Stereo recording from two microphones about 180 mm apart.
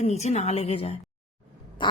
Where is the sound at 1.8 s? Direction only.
25° left (ahead or behind).